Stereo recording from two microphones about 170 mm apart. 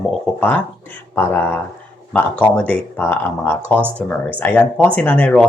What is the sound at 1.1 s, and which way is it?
Speech, 15° left (ahead or behind).